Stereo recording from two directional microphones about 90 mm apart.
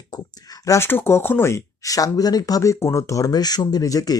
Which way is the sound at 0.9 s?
25° left (ahead or behind).